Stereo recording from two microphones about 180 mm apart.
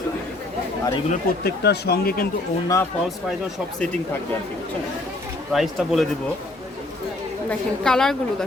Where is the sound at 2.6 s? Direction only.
15° left (ahead or behind).